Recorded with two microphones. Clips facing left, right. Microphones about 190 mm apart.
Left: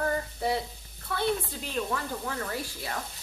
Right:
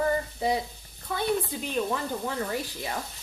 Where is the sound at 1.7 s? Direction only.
20° right (ahead or behind).